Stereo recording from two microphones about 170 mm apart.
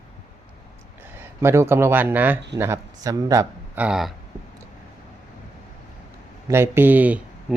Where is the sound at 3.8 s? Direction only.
5° right (ahead or behind).